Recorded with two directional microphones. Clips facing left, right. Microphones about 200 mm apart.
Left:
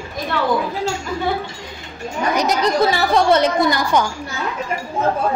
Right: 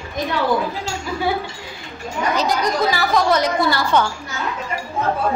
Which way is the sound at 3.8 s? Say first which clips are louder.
Even; 15° left (ahead or behind).